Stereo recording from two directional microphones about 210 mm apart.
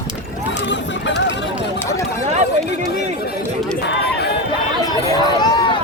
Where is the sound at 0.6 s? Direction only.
60° left (ahead or behind).